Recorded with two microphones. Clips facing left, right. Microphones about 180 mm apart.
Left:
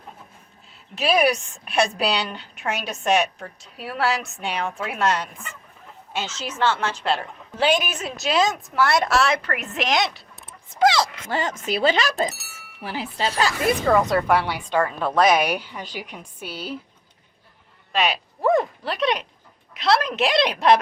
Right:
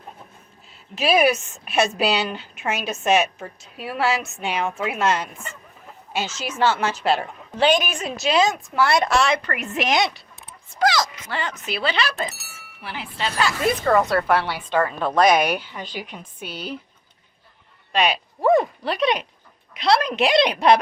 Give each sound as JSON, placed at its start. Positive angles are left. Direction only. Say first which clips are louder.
{"t": 0.9, "sound": "a woman's voice", "louder": "right 1 dB", "side_deg": -5}
{"t": 7.6, "sound": "a woman's voice", "louder": "right 2 dB", "side_deg": 5}
{"t": 10.7, "sound": "speech", "louder": "left 2 dB", "side_deg": 25}
{"t": 11.3, "sound": "speech", "louder": "left 3 dB", "side_deg": 45}
{"t": 12.3, "sound": "a sound", "louder": "left 1 dB", "side_deg": 0}
{"t": 12.8, "sound": "speech", "louder": "left 3 dB", "side_deg": 40}
{"t": 14.0, "sound": "a woman's voice", "louder": "even", "side_deg": 15}
{"t": 17.9, "sound": "a woman's voice", "louder": "right 2 dB", "side_deg": 0}